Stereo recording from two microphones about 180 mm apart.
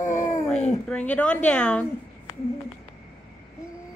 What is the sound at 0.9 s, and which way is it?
Speech, 5° left (ahead or behind).